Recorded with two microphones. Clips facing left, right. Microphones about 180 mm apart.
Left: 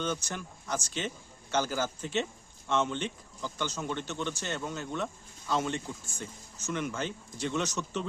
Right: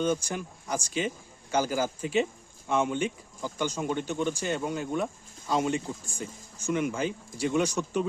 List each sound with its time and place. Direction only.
0.0 s speech: 10° right (ahead or behind)